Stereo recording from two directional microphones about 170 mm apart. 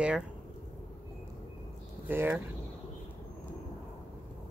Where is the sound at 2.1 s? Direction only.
15° right (ahead or behind).